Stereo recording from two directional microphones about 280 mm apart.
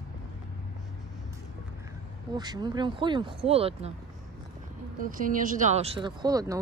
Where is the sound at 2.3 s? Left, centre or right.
Centre.